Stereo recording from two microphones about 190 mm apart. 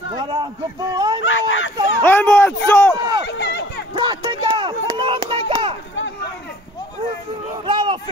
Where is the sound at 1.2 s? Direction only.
90° left.